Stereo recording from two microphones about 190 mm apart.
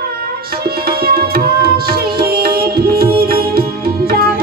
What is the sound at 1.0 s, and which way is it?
Music, 55° right (ahead or behind).